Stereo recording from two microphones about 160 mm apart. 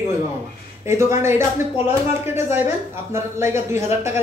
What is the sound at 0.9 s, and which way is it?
Speech, 15° right (ahead or behind).